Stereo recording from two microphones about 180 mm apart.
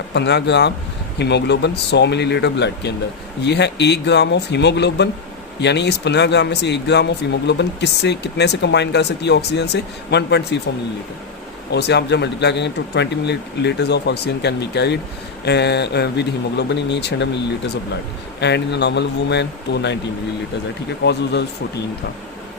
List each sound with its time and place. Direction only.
0.1 s speech: 75° left (ahead or behind)
11.7 s speech: 70° left (ahead or behind)
18.3 s speech: 70° left (ahead or behind)
21.0 s speech: 70° left (ahead or behind)